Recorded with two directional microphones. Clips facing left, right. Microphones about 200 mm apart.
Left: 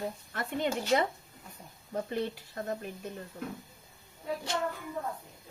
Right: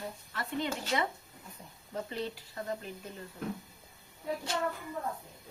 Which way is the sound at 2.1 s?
50° left (ahead or behind).